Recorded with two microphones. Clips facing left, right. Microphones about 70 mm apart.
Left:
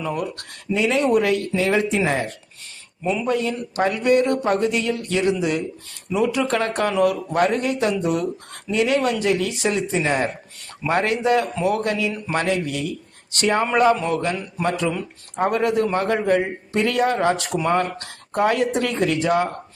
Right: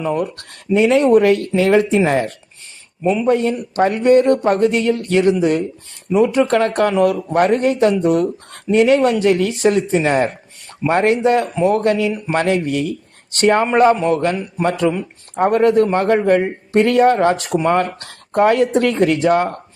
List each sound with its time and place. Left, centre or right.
0.0 s a man's voice: right
3.2 s a man's voice: right